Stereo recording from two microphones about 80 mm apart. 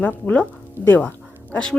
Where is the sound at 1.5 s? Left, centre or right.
Centre.